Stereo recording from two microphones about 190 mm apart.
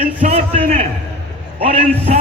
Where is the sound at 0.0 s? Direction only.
45° right (ahead or behind).